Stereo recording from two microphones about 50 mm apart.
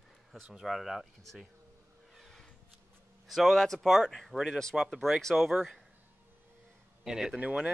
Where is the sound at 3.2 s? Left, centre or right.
Centre.